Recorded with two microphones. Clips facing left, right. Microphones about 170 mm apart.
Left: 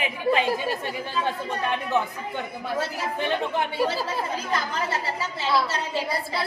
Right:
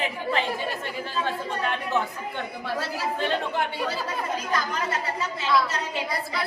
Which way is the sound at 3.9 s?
30° left (ahead or behind).